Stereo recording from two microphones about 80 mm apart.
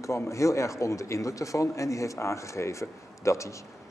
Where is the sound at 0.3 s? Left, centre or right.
Left.